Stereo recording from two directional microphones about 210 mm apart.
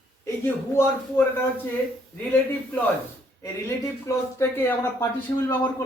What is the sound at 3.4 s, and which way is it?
Speech, 15° left (ahead or behind).